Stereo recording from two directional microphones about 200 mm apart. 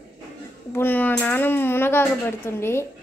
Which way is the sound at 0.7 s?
10° left (ahead or behind).